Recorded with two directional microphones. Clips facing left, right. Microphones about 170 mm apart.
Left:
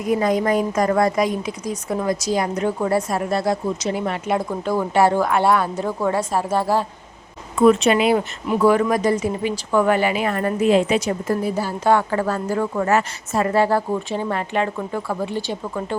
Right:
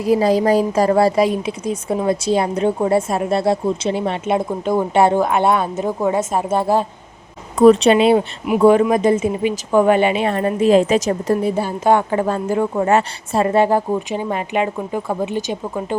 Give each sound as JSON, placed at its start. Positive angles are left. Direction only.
{"t": 0.0, "sound": "a woman's voice", "side_deg": -30}
{"t": 7.5, "sound": "a woman's voice", "side_deg": -35}
{"t": 10.7, "sound": "speech", "side_deg": -40}
{"t": 11.3, "sound": "a woman's voice", "side_deg": -25}